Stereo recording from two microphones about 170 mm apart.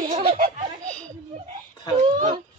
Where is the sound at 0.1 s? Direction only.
45° right (ahead or behind).